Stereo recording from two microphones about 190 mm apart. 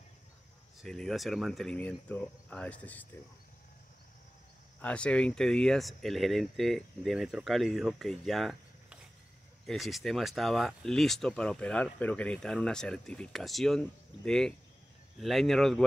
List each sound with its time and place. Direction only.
0.7 s speech: centre (ahead or behind)
4.7 s speech: 5° left (ahead or behind)